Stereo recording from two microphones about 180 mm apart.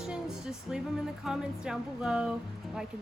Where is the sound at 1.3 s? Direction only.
5° right (ahead or behind).